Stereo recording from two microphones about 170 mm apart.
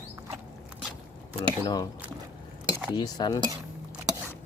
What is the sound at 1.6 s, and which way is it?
Speech, 25° left (ahead or behind).